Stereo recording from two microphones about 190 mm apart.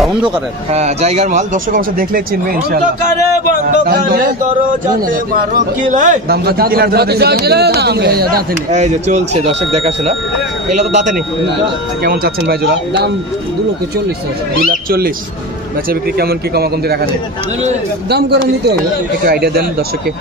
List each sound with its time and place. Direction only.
0.7 s a man's voice: 35° right (ahead or behind)
3.7 s a man's voice: 50° right (ahead or behind)
5.9 s speech: 40° right (ahead or behind)
8.7 s a man's voice: 35° right (ahead or behind)
10.7 s a man's voice: 40° right (ahead or behind)
12.0 s speech: 55° right (ahead or behind)
14.7 s a man's voice: 50° right (ahead or behind)
18.1 s speech: 60° right (ahead or behind)